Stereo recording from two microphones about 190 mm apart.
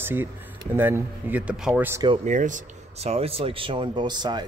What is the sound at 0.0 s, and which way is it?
Speech, 10° right (ahead or behind).